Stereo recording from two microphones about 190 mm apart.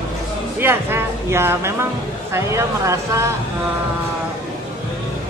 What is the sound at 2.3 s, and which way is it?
Speech, 15° right (ahead or behind).